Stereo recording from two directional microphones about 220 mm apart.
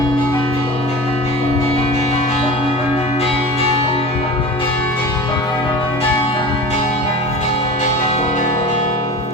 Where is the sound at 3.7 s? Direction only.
25° left (ahead or behind).